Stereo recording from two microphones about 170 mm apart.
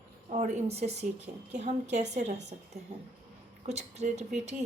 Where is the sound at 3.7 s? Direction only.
40° right (ahead or behind).